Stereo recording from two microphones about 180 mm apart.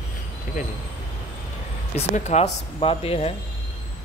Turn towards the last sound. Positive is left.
turn(degrees=35)  # may be behind; listen again after turning